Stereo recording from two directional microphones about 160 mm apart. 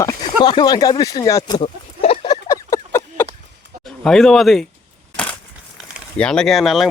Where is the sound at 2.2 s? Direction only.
20° left (ahead or behind).